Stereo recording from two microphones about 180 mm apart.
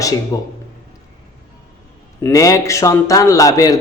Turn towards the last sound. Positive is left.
turn(degrees=20)  # may be behind; listen again after turning